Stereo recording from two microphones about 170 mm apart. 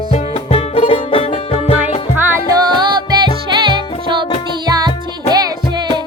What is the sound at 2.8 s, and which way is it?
Music, 25° right (ahead or behind).